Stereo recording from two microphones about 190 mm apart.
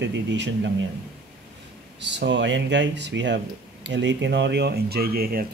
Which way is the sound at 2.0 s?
70° right (ahead or behind).